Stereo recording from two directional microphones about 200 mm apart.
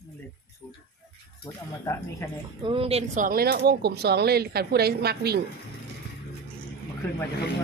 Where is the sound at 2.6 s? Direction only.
25° right (ahead or behind); by 5.4 s 50° right (ahead or behind).